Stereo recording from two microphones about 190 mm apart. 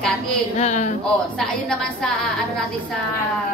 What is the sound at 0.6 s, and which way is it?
Speech, 40° left (ahead or behind).